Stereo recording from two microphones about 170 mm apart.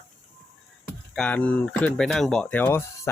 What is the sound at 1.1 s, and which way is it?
Speech, 5° left (ahead or behind).